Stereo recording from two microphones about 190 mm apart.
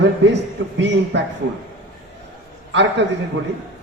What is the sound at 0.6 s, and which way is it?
Speech, 90° right.